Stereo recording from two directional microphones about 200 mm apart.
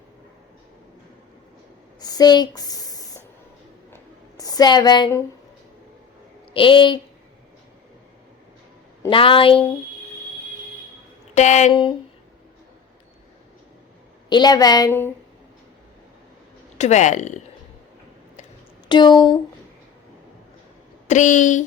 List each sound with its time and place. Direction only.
2.0 s a sound: 20° left (ahead or behind)
6.5 s a woman's voice: 25° left (ahead or behind)
9.0 s a woman's voice: 25° left (ahead or behind)
11.3 s speech: 35° left (ahead or behind)
11.7 s a woman's voice: 25° left (ahead or behind)
14.3 s a woman's voice: 20° left (ahead or behind)
16.7 s speech: 35° left (ahead or behind)
18.9 s a woman's voice: 20° left (ahead or behind)
21.1 s speech: 40° left (ahead or behind)